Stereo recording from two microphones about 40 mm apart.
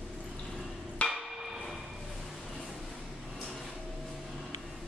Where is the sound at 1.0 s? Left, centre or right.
Left.